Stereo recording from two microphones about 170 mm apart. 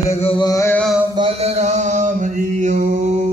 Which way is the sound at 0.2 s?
35° left (ahead or behind).